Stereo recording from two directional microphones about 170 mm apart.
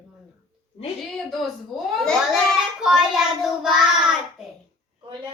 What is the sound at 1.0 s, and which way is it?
Child singing, centre (ahead or behind).